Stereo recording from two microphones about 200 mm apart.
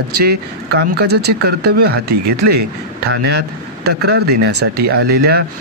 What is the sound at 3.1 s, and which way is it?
Speech, 55° right (ahead or behind).